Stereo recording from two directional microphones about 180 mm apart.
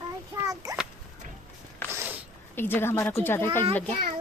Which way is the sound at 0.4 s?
20° right (ahead or behind).